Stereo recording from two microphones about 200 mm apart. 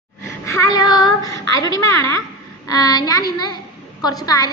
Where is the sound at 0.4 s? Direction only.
15° left (ahead or behind).